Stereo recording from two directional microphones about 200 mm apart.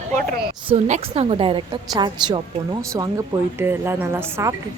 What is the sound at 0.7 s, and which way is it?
A woman's voice, 30° right (ahead or behind).